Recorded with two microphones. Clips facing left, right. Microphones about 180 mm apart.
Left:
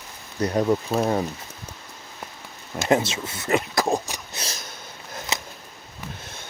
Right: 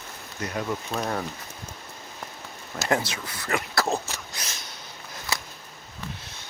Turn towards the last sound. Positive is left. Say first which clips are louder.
# left 2 dB
turn(degrees=20)  # may be behind; listen again after turning